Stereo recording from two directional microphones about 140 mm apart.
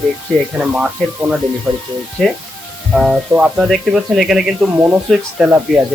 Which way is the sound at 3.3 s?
10° right (ahead or behind).